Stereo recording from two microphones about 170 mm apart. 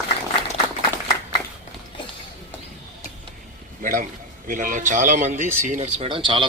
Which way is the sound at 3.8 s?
50° right (ahead or behind).